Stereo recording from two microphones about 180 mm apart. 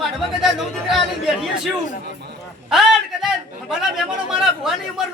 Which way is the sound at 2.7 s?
Centre (ahead or behind).